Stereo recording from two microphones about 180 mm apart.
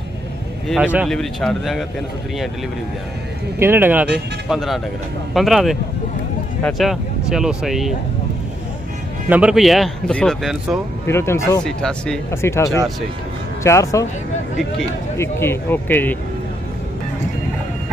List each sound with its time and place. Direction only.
0.7 s a man's voice: 5° right (ahead or behind)
3.5 s a man's voice: 10° right (ahead or behind)
9.3 s a man's voice: 5° right (ahead or behind)
11.1 s speech: 15° left (ahead or behind)
11.6 s a man's voice: 5° left (ahead or behind)
12.3 s speech: 15° left (ahead or behind)
15.1 s speech: 15° left (ahead or behind)